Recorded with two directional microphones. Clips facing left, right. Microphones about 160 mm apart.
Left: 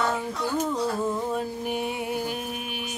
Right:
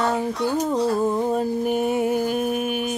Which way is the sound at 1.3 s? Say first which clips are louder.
Right 7 dB; 45° right (ahead or behind).